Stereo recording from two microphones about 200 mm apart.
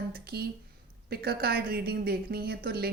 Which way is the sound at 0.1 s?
50° right (ahead or behind).